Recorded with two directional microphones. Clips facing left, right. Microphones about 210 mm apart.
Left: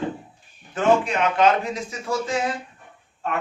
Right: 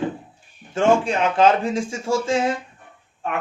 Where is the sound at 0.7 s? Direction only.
30° right (ahead or behind).